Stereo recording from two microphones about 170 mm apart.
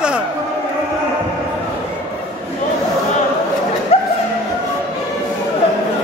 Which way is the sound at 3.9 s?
40° left (ahead or behind).